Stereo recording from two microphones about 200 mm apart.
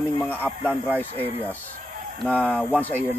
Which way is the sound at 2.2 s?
10° right (ahead or behind).